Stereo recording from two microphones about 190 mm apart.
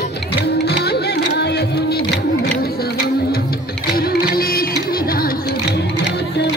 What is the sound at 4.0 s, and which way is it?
Music, 50° left (ahead or behind).